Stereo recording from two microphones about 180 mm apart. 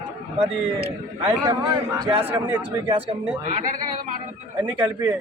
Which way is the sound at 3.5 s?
40° right (ahead or behind).